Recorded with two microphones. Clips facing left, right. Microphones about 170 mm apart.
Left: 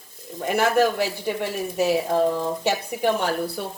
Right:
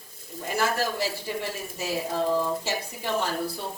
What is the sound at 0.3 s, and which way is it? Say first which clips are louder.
Speech: left 7 dB; 65° left (ahead or behind).